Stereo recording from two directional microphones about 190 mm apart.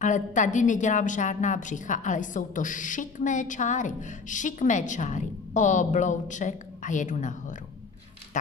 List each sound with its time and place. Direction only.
0.0 s a woman's voice: 40° left (ahead or behind)